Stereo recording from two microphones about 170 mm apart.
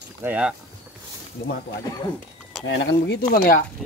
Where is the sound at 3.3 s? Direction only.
55° left (ahead or behind).